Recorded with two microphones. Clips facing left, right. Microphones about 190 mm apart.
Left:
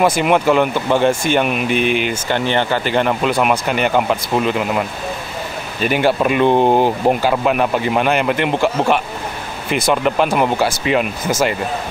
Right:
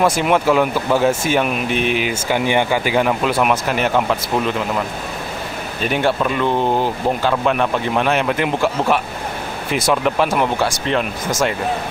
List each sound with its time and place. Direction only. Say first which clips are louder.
0.0 s speech: left 1 dB; centre (ahead or behind)
5.9 s speech: left 2 dB; 5° left (ahead or behind)
6.2 s speech: left 5 dB; 20° left (ahead or behind)
7.4 s speech: left 2 dB; 5° left (ahead or behind)